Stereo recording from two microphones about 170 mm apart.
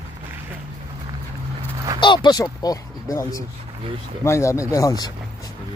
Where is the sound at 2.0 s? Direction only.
25° left (ahead or behind).